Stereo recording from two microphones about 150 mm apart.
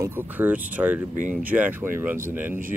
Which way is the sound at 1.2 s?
60° right (ahead or behind).